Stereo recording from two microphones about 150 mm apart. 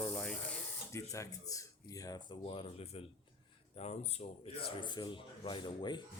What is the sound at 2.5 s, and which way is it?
Speech, 40° left (ahead or behind).